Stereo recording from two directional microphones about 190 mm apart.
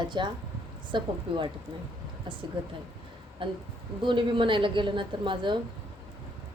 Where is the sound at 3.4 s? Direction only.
25° right (ahead or behind).